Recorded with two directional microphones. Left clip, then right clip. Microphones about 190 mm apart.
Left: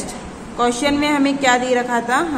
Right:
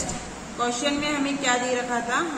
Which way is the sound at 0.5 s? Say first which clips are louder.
Left 8 dB; 50° left (ahead or behind).